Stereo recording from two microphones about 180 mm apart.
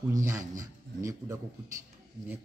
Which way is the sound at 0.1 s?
15° right (ahead or behind).